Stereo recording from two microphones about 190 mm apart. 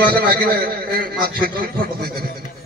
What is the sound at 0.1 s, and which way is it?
A man's voice, 50° right (ahead or behind).